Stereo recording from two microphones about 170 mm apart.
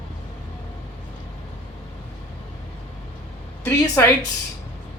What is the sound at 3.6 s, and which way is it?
Speech, 15° left (ahead or behind).